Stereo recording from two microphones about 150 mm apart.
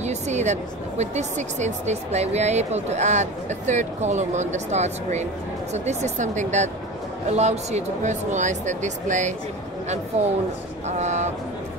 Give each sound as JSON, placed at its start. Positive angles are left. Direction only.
{"t": 0.0, "sound": "speech", "side_deg": -50}